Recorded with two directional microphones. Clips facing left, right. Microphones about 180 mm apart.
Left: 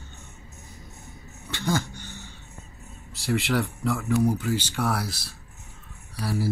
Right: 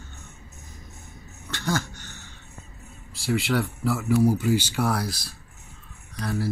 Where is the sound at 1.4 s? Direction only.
15° left (ahead or behind).